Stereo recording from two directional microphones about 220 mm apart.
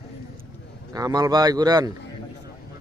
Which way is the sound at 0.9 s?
15° right (ahead or behind).